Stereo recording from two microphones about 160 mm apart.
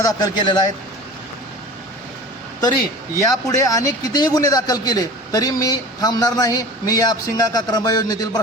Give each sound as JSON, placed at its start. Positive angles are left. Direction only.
{"t": 0.0, "sound": "a man's voice", "side_deg": 25}
{"t": 3.2, "sound": "a man's voice", "side_deg": 20}